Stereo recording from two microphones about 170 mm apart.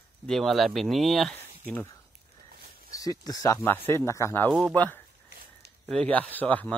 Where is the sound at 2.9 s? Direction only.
20° left (ahead or behind).